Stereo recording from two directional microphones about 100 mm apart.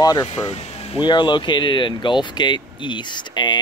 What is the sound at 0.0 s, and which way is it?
Speech, 40° left (ahead or behind).